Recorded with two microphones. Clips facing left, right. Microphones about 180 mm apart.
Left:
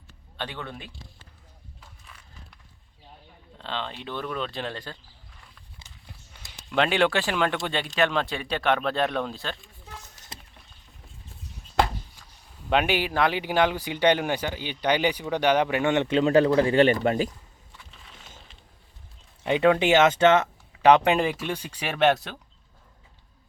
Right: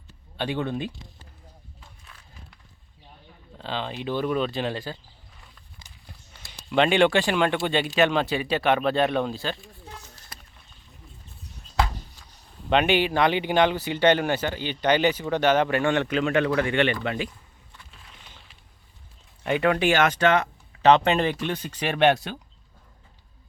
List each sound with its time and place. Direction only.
0.3 s speech: 15° right (ahead or behind)
3.6 s speech: 5° right (ahead or behind)
6.4 s speech: centre (ahead or behind)
10.3 s a sound: 25° left (ahead or behind)
12.7 s speech: 5° left (ahead or behind); by 17.3 s 40° left (ahead or behind)
19.4 s speech: 20° left (ahead or behind)
20.8 s speech: 10° left (ahead or behind)